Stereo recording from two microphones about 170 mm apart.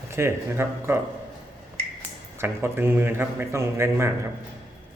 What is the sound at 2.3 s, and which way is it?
A man's voice, 15° right (ahead or behind).